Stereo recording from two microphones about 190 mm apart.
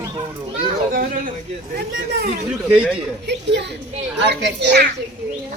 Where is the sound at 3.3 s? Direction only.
65° right (ahead or behind).